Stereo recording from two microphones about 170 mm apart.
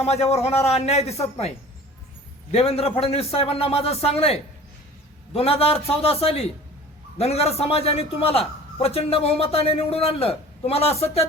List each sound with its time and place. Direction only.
0.0 s a man's voice: 40° left (ahead or behind)